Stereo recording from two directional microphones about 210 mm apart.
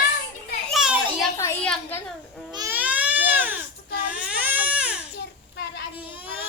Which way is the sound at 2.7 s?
5° right (ahead or behind).